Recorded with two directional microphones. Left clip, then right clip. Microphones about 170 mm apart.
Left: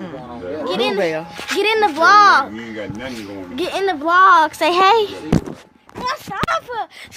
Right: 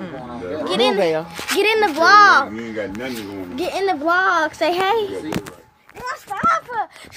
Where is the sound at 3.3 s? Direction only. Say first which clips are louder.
Left 3 dB; 25° left (ahead or behind).